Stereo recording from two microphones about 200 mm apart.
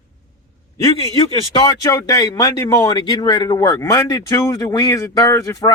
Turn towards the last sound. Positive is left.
turn(degrees=15)  # may be behind; listen again after turning